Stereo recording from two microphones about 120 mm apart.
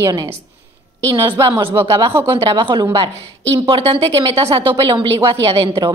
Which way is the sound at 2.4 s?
40° right (ahead or behind).